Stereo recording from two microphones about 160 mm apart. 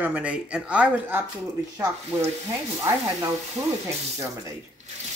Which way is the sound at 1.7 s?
20° right (ahead or behind).